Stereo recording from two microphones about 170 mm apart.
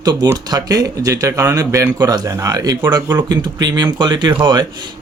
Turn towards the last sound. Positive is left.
turn(degrees=-25)  # may be behind; listen again after turning